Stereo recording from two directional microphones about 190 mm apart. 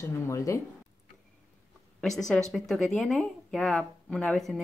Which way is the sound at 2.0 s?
Centre (ahead or behind).